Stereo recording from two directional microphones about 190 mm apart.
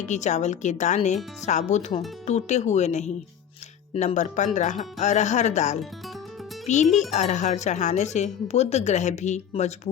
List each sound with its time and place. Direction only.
0.0 s speech: 40° left (ahead or behind)